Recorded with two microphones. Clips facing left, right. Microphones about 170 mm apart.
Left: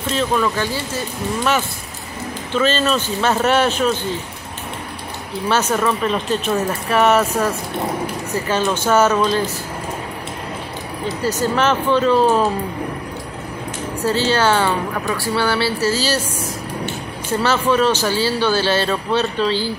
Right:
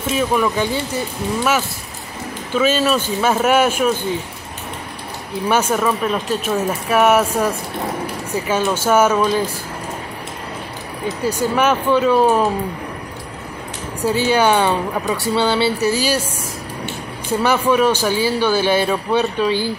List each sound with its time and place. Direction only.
0.0 s speech: 10° right (ahead or behind)
2.5 s speech: 10° right (ahead or behind)
5.5 s speech: 10° right (ahead or behind)
11.2 s speech: 10° right (ahead or behind)
14.0 s speech: 15° right (ahead or behind)
17.3 s speech: 15° right (ahead or behind)